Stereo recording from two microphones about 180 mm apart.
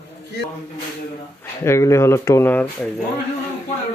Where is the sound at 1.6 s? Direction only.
15° left (ahead or behind).